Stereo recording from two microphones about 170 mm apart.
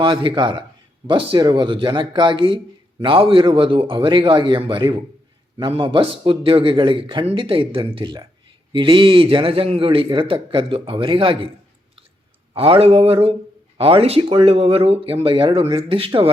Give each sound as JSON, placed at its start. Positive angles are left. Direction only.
{"t": 0.0, "sound": "a man's voice", "side_deg": -30}
{"t": 12.5, "sound": "a man's voice", "side_deg": -35}